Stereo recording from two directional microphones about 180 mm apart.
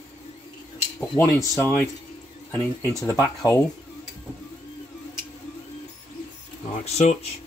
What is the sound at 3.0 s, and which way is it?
Speech, 20° left (ahead or behind).